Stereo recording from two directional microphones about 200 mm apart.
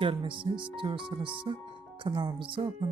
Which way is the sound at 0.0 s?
25° right (ahead or behind).